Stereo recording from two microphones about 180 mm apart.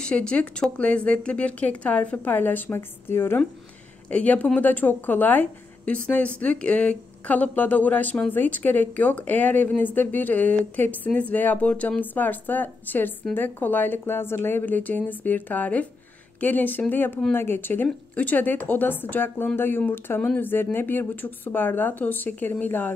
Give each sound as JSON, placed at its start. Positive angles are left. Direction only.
{"t": 0.0, "sound": "a woman's voice", "side_deg": 5}